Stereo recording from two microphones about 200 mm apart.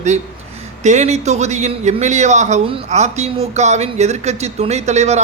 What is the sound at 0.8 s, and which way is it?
A man's voice, 35° right (ahead or behind).